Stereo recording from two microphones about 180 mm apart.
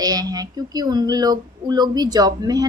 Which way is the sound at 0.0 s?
20° right (ahead or behind).